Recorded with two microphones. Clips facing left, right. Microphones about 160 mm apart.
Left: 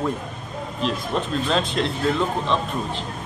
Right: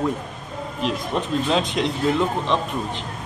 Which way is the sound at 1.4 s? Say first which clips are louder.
Right 1 dB; 15° right (ahead or behind).